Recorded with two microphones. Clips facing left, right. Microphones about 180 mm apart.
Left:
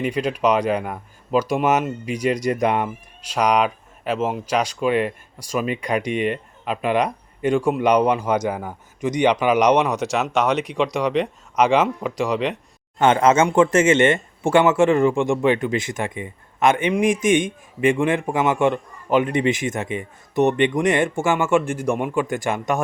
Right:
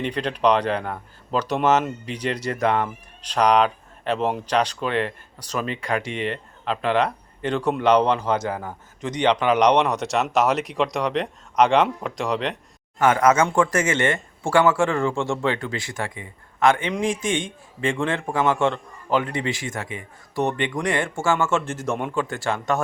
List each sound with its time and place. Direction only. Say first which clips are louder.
0.0 s speech: left 1 dB; 10° left (ahead or behind)
13.0 s speech: left 2 dB; 25° left (ahead or behind)